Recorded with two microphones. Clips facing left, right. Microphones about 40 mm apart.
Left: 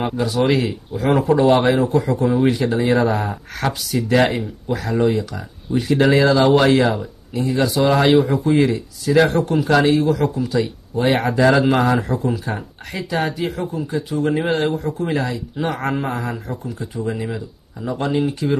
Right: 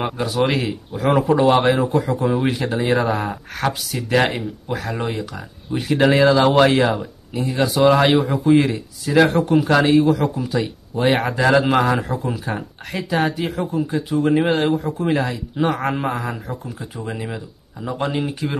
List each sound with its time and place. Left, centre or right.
0.0 s speech: centre